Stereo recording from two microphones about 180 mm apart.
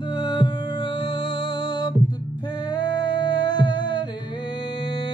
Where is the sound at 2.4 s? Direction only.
25° left (ahead or behind).